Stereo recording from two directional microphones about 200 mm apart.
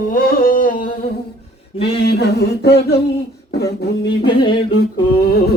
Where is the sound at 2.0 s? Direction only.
55° left (ahead or behind).